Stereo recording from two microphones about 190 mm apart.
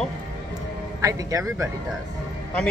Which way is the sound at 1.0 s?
15° right (ahead or behind).